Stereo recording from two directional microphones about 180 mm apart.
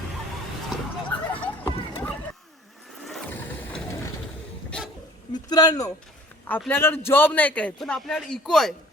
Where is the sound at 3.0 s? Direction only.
5° left (ahead or behind).